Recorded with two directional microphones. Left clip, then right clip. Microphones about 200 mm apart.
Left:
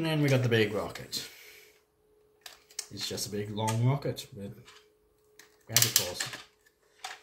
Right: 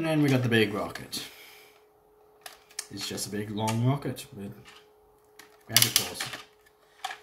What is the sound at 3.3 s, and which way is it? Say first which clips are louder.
Speech: right 3 dB; 20° left (ahead or behind).